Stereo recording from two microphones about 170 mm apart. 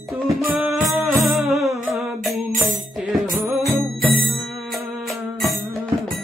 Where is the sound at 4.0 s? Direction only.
60° right (ahead or behind).